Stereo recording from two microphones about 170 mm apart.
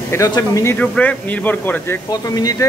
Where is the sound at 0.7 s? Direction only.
5° left (ahead or behind).